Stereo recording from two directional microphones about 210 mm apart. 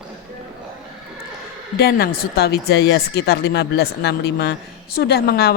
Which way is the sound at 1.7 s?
45° left (ahead or behind).